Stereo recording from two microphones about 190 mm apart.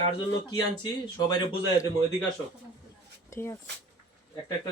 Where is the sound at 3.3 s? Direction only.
15° left (ahead or behind).